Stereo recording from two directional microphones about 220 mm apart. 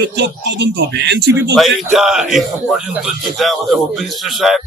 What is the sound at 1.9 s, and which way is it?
Speech, centre (ahead or behind).